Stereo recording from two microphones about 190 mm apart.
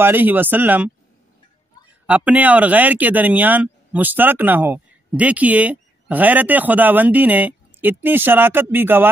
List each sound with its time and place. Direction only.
0.0 s speech: 10° right (ahead or behind)
2.0 s speech: 10° right (ahead or behind)